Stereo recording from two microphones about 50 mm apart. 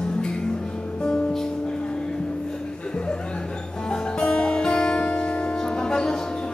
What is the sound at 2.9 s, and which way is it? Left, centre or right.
Music, centre.